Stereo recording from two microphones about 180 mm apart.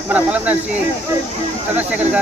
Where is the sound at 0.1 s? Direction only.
10° right (ahead or behind).